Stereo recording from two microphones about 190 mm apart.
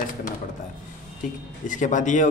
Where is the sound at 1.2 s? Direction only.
40° left (ahead or behind).